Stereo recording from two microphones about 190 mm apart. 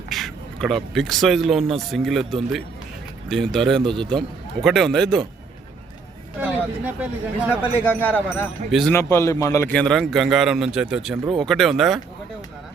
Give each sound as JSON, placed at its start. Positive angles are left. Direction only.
{"t": 0.1, "sound": "a man's voice", "side_deg": 0}
{"t": 7.0, "sound": "speech", "side_deg": -5}
{"t": 7.9, "sound": "a man's voice", "side_deg": 10}
{"t": 9.0, "sound": "a man's voice", "side_deg": 15}